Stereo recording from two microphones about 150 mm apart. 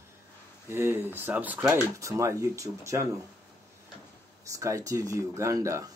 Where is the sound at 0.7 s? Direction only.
15° right (ahead or behind).